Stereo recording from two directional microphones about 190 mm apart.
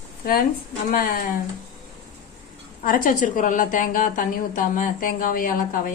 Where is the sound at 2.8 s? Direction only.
45° left (ahead or behind).